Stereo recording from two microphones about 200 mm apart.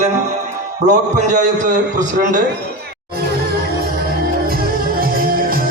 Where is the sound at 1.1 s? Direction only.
40° right (ahead or behind).